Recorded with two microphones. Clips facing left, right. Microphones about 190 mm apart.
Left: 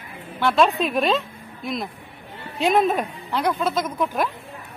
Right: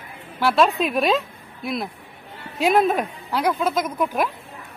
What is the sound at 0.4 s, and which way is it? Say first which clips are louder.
A woman's voice: even; 5° right (ahead or behind).